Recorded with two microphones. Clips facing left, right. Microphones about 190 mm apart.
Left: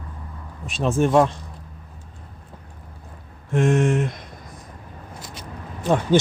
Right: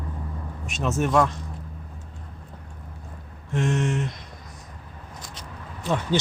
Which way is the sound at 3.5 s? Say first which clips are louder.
Left 6 dB; 55° left (ahead or behind).